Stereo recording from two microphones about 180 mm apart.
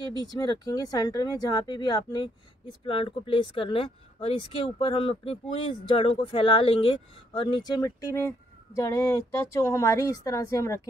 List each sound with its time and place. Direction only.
0.3 s speech: 20° left (ahead or behind)